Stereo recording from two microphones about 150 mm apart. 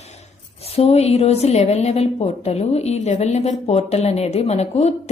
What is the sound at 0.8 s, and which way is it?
A woman's voice, 45° left (ahead or behind).